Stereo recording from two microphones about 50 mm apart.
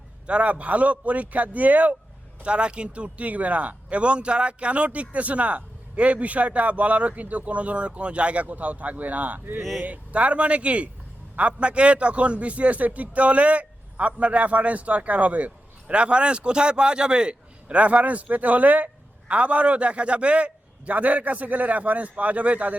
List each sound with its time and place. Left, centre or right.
0.3 s a man's voice: right
2.4 s a man's voice: right